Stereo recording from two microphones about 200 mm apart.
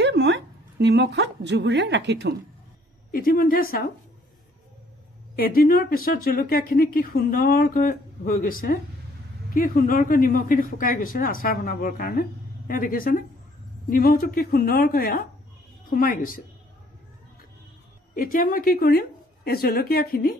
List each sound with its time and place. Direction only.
0.0 s a woman's voice: 60° right (ahead or behind)
3.1 s speech: 45° left (ahead or behind)
5.3 s speech: 50° left (ahead or behind)
18.1 s speech: 45° left (ahead or behind)